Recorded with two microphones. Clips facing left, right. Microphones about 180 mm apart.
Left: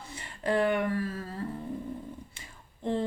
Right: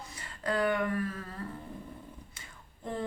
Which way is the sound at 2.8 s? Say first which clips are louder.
Left 6 dB; 25° left (ahead or behind).